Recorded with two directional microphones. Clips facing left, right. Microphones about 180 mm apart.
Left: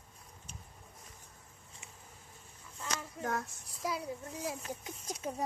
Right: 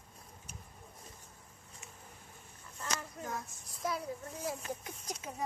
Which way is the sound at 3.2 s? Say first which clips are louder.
Left 6 dB; 75° left (ahead or behind).